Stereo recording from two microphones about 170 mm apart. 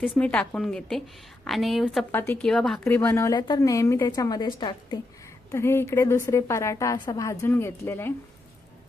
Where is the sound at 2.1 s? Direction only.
15° left (ahead or behind).